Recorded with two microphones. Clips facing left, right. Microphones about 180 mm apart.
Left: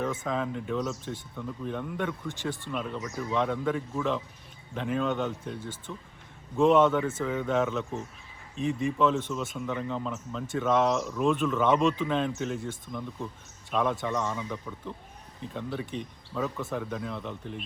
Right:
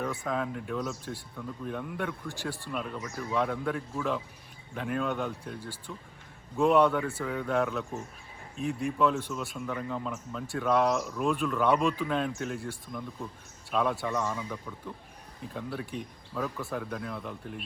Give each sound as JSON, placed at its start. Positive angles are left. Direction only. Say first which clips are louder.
{"t": 0.2, "sound": "speech", "louder": "left 1 dB", "side_deg": 0}
{"t": 5.5, "sound": "speech", "louder": "left 2 dB", "side_deg": 20}
{"t": 6.6, "sound": "speech", "louder": "left 2 dB", "side_deg": 0}